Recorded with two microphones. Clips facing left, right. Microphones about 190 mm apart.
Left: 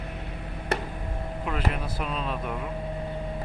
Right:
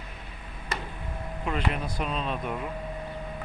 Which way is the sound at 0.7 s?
65° left (ahead or behind).